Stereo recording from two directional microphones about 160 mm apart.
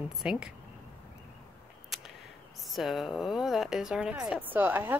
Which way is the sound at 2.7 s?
Centre (ahead or behind).